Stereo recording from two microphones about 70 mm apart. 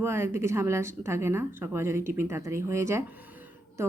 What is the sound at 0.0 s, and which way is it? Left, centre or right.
A woman's voice, right.